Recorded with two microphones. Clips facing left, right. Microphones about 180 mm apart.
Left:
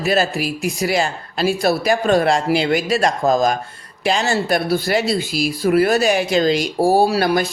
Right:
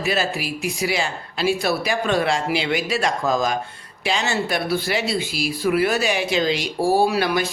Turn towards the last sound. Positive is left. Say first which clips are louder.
# left 3 dB
turn(degrees=40)  # may be behind; listen again after turning